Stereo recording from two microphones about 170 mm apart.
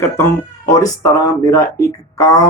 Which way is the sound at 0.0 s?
15° left (ahead or behind).